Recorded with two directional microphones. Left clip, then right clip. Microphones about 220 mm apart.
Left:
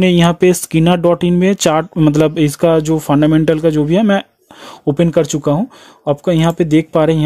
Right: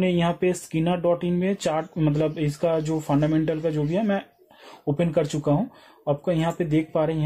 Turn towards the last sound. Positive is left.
turn(degrees=50)  # may be behind; listen again after turning